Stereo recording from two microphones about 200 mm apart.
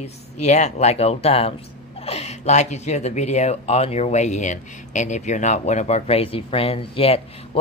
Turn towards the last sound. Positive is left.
turn(degrees=30)  # may be behind; listen again after turning